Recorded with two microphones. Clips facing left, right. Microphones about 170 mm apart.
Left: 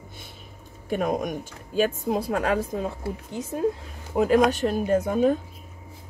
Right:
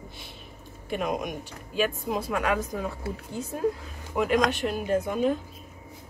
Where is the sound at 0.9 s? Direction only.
40° left (ahead or behind); by 3.4 s 25° left (ahead or behind).